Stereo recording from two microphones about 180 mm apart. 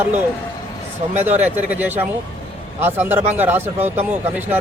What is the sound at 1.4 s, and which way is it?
Speech, 10° right (ahead or behind).